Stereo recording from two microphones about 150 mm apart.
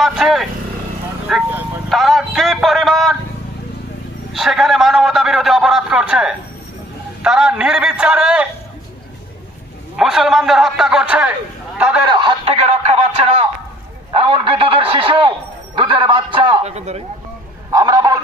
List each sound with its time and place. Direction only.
0.0 s a man's voice: centre (ahead or behind)
4.3 s a man's voice: centre (ahead or behind)
9.9 s a man's voice: 5° right (ahead or behind)
12.1 s a sound: 30° right (ahead or behind)
16.7 s speech: 45° right (ahead or behind)
17.6 s a sound: 25° right (ahead or behind)